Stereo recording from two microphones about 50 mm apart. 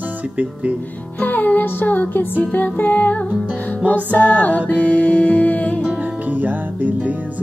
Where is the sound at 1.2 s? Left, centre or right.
Left.